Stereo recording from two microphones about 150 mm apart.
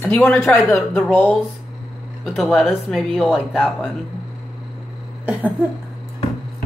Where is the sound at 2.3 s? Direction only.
Centre (ahead or behind).